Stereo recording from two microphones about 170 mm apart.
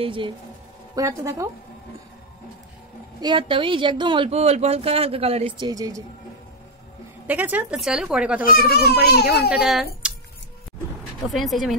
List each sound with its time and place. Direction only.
0.0 s speech: 30° right (ahead or behind)
0.9 s a woman's voice: 20° right (ahead or behind)
3.2 s speech: 25° right (ahead or behind)
5.7 s a woman's voice: 20° right (ahead or behind)
7.2 s speech: 10° right (ahead or behind)
9.0 s a child's voice: 70° left (ahead or behind)
9.5 s speech: 5° right (ahead or behind)
11.2 s speech: centre (ahead or behind)